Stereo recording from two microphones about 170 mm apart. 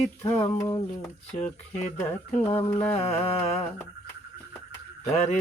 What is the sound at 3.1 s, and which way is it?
Music, 35° left (ahead or behind).